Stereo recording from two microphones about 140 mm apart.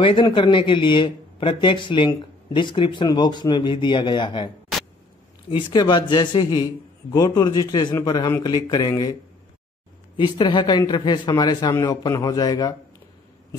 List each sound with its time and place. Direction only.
0.0 s a man's voice: 35° left (ahead or behind)
5.5 s a man's voice: 30° left (ahead or behind)
10.1 s a man's voice: 35° left (ahead or behind)